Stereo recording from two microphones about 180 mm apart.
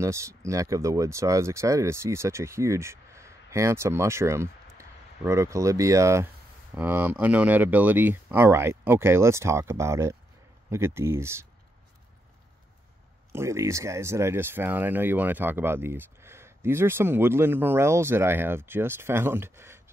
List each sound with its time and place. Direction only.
0.0 s speech: 15° right (ahead or behind)
13.3 s speech: 15° right (ahead or behind)